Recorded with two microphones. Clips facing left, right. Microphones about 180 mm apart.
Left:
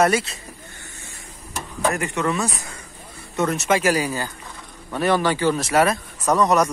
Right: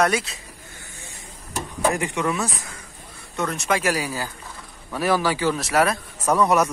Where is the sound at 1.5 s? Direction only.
15° right (ahead or behind).